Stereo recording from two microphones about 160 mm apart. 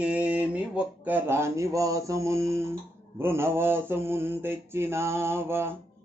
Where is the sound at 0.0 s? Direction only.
10° right (ahead or behind).